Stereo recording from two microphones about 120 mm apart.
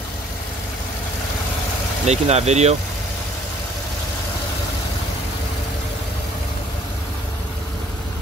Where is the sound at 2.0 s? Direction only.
65° right (ahead or behind).